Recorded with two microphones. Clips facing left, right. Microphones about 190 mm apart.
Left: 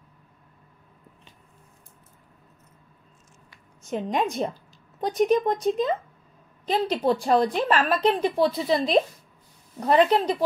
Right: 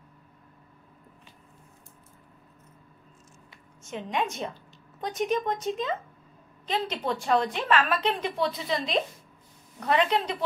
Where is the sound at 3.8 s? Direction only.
40° left (ahead or behind).